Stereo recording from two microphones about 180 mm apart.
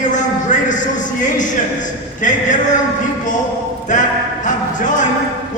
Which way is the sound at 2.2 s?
45° left (ahead or behind).